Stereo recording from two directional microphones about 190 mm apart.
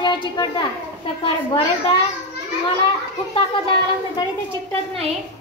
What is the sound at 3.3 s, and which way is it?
Speech, 25° left (ahead or behind).